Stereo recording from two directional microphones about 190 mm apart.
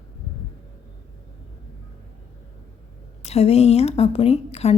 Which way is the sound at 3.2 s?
35° left (ahead or behind).